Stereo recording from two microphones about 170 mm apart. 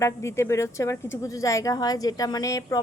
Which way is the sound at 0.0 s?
15° left (ahead or behind).